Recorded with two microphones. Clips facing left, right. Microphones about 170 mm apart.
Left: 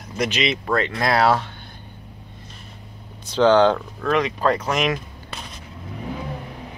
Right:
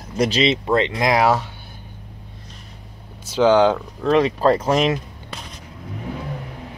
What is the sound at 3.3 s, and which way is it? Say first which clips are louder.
Speech: even; 10° right (ahead or behind).